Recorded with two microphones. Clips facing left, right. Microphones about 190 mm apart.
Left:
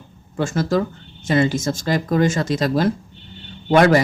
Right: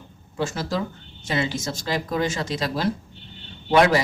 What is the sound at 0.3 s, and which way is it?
Speech, 50° left (ahead or behind).